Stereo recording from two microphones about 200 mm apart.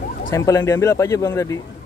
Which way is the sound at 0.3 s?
15° left (ahead or behind).